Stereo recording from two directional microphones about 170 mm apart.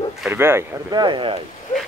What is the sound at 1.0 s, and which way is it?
Speech, 30° right (ahead or behind).